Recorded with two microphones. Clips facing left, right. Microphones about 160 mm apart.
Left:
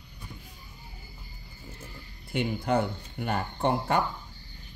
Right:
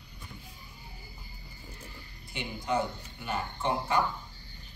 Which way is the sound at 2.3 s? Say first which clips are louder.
Left 5 dB; 55° left (ahead or behind).